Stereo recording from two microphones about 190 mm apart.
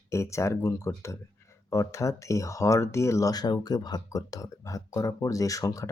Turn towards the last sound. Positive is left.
turn(degrees=15)  # may be behind; listen again after turning